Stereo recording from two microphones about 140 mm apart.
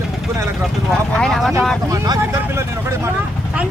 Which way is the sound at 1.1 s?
5° left (ahead or behind).